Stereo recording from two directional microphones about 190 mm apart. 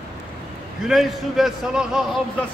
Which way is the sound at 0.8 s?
Centre (ahead or behind).